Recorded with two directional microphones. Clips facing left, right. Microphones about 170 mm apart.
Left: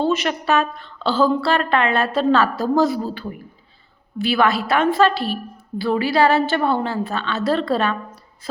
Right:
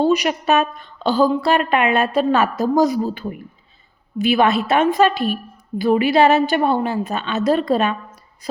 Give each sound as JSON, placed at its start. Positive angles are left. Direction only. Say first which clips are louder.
{"t": 0.0, "sound": "a woman's voice", "louder": "right 3 dB", "side_deg": -15}